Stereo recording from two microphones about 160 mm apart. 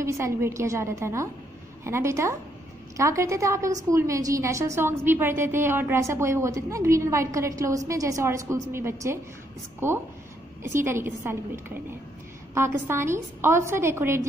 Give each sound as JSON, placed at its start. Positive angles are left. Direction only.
{"t": 0.0, "sound": "a woman's voice", "side_deg": -15}